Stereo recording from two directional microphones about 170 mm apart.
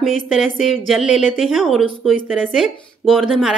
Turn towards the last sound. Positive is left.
turn(degrees=-5)  # may be behind; listen again after turning